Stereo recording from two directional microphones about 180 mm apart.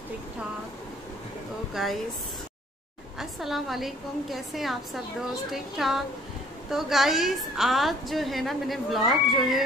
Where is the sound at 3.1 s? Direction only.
Centre (ahead or behind).